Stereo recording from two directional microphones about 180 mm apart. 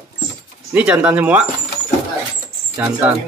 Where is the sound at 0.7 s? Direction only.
5° right (ahead or behind).